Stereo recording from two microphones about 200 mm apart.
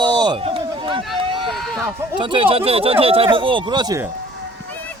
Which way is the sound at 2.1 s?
25° right (ahead or behind).